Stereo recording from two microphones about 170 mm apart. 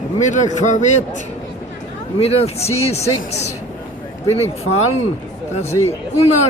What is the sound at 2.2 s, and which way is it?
Speech, 35° left (ahead or behind).